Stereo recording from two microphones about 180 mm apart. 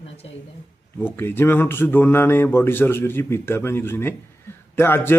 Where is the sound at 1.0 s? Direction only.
10° left (ahead or behind).